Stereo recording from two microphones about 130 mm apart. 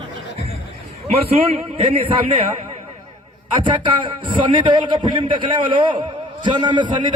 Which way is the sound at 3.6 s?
40° right (ahead or behind).